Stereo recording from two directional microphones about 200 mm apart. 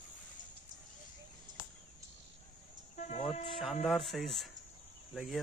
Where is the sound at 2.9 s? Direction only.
35° left (ahead or behind).